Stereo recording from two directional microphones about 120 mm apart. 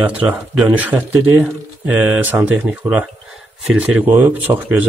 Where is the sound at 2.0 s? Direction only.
15° right (ahead or behind).